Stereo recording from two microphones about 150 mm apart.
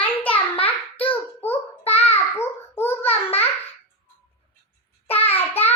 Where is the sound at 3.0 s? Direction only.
40° left (ahead or behind).